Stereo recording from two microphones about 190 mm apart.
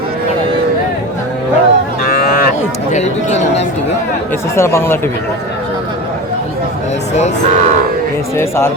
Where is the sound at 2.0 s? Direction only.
50° left (ahead or behind).